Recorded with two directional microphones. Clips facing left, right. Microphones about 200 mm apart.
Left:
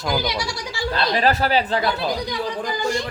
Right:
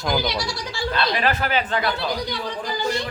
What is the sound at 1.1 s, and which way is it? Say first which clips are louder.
Speech: left 3 dB; 35° left (ahead or behind).